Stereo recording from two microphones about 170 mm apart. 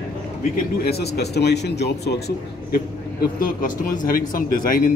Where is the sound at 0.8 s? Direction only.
70° left (ahead or behind).